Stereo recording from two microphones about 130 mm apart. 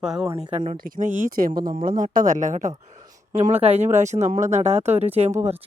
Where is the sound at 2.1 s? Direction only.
80° right.